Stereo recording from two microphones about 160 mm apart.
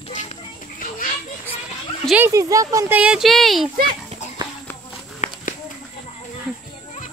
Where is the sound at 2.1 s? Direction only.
20° right (ahead or behind).